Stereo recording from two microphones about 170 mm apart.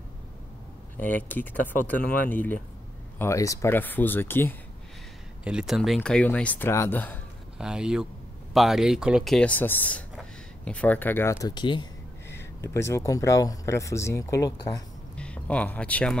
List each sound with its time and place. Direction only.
0.9 s speech: 10° left (ahead or behind)
5.4 s speech: 5° right (ahead or behind); by 7.2 s 10° left (ahead or behind)
7.5 s speech: 5° right (ahead or behind); by 11.9 s 25° left (ahead or behind)
12.4 s speech: 15° left (ahead or behind)
15.1 s speech: 5° left (ahead or behind)